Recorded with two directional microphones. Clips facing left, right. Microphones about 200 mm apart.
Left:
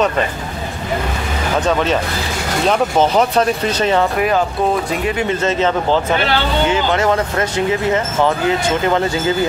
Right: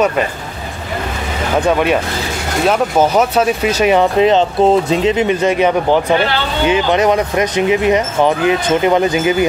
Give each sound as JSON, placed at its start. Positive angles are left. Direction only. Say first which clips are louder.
{"t": 1.6, "sound": "speech", "louder": "right 3 dB", "side_deg": -15}